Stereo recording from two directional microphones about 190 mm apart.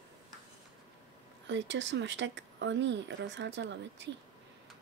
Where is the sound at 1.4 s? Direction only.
70° right (ahead or behind).